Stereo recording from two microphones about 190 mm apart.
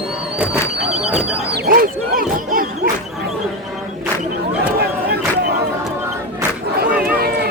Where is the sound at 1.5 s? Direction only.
50° right (ahead or behind).